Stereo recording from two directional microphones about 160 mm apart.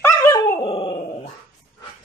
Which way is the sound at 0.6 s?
30° left (ahead or behind).